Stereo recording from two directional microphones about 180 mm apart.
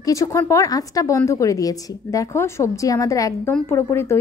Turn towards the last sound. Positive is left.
turn(degrees=15)  # may be behind; listen again after turning